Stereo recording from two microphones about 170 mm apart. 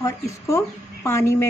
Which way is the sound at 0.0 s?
15° left (ahead or behind).